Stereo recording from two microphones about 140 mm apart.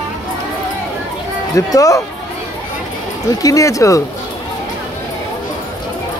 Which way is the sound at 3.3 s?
25° left (ahead or behind).